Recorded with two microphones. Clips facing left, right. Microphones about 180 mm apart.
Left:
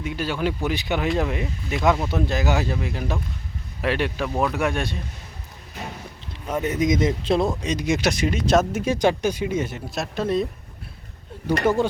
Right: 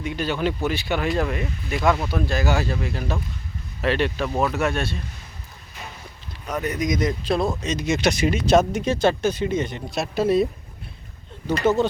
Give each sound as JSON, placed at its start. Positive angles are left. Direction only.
{"t": 0.0, "sound": "speech", "side_deg": 5}
{"t": 6.5, "sound": "speech", "side_deg": 25}
{"t": 8.1, "sound": "speech", "side_deg": -5}
{"t": 11.4, "sound": "speech", "side_deg": 10}